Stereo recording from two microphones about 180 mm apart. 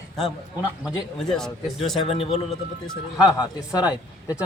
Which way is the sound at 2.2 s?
35° left (ahead or behind).